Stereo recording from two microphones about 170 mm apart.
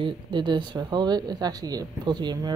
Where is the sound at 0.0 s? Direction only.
25° right (ahead or behind).